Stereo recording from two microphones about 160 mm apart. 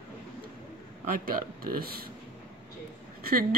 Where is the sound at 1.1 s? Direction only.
65° right (ahead or behind).